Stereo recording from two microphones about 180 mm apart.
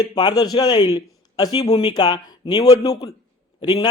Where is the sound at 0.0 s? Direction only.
25° left (ahead or behind).